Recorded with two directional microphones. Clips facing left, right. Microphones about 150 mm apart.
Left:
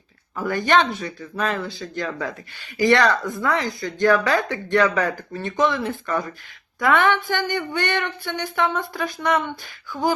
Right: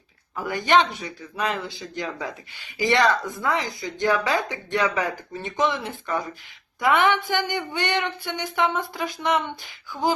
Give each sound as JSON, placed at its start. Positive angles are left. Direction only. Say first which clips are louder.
{"t": 0.3, "sound": "speech", "louder": "left 1 dB", "side_deg": -15}